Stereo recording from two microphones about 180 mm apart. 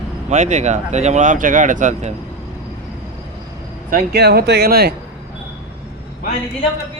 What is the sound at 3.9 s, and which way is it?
Speech, 65° right (ahead or behind).